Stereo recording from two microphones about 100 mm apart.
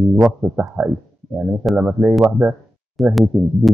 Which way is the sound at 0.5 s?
15° right (ahead or behind).